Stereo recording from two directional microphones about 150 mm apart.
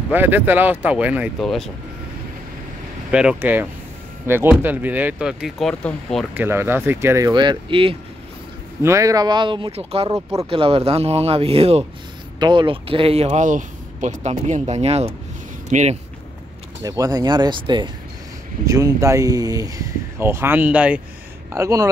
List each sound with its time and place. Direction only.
0.1 s speech: 15° right (ahead or behind)
1.4 s speech: centre (ahead or behind)
3.1 s speech: 5° right (ahead or behind)
6.3 s speech: 15° right (ahead or behind); by 7.9 s 35° right (ahead or behind)
8.8 s speech: 20° right (ahead or behind); by 16.0 s 50° right (ahead or behind)
16.8 s speech: 25° right (ahead or behind)